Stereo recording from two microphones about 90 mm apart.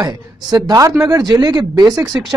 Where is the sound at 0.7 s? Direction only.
40° right (ahead or behind).